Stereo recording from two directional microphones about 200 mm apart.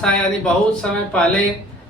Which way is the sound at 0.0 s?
5° left (ahead or behind).